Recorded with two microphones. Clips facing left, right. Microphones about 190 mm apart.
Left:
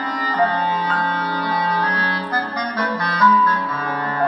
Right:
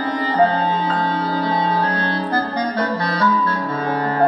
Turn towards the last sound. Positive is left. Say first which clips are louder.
# right 4 dB
turn(degrees=-35)  # may be behind; listen again after turning